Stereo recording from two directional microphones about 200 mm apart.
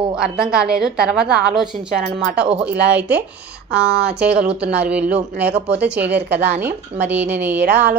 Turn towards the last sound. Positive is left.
turn(degrees=-10)  # may be behind; listen again after turning